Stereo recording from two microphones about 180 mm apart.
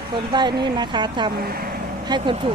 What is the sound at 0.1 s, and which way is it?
Speech, 25° right (ahead or behind).